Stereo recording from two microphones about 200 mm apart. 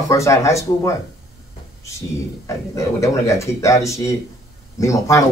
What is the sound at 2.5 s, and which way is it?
Speech, 15° left (ahead or behind).